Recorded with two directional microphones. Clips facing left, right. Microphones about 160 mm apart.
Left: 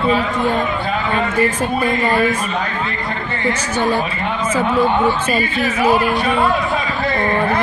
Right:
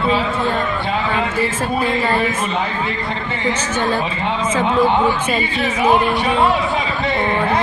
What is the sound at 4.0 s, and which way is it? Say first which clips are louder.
Speech: even; 25° right (ahead or behind).